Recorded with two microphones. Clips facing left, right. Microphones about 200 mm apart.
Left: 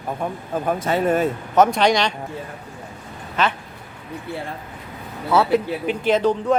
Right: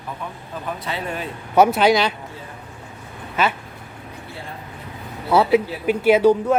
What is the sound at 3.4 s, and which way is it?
Speech, 10° right (ahead or behind).